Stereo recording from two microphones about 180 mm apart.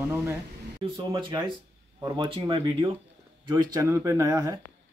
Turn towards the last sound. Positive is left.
turn(degrees=-20)  # may be behind; listen again after turning